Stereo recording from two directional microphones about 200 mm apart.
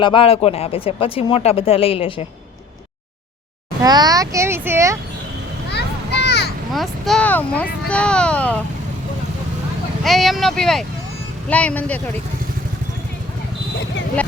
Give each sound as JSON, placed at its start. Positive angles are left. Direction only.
{"t": 0.0, "sound": "speech", "side_deg": 25}
{"t": 3.8, "sound": "speech", "side_deg": -20}
{"t": 5.7, "sound": "a sound", "side_deg": 55}
{"t": 6.7, "sound": "speech", "side_deg": 0}
{"t": 10.0, "sound": "speech", "side_deg": 0}